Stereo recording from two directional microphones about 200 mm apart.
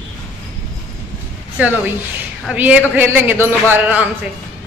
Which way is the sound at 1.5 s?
5° right (ahead or behind).